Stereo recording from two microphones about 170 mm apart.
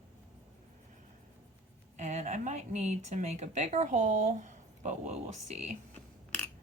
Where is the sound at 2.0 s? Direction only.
45° right (ahead or behind).